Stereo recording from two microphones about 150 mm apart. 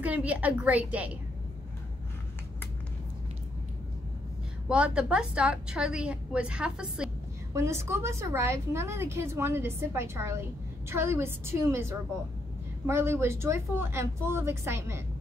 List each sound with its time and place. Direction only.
0.0 s a woman's voice: 10° right (ahead or behind)
4.6 s a woman's voice: 5° right (ahead or behind)
7.5 s a woman's voice: 15° right (ahead or behind)